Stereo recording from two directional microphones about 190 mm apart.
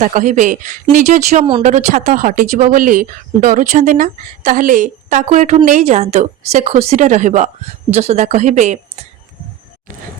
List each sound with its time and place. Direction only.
0.0 s a woman's voice: 40° right (ahead or behind)